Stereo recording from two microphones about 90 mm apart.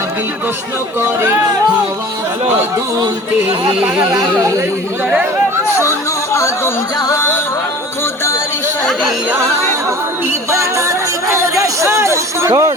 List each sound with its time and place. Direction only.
4.1 s speech: 35° right (ahead or behind)
7.1 s music: 25° left (ahead or behind)
10.5 s music: 35° right (ahead or behind)
11.6 s speech: 35° right (ahead or behind)